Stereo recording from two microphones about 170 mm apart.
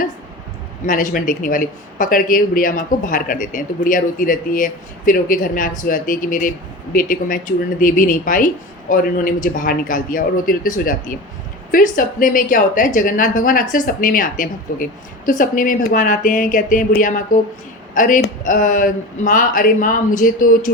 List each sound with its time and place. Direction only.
0.9 s a man's voice: 55° left (ahead or behind)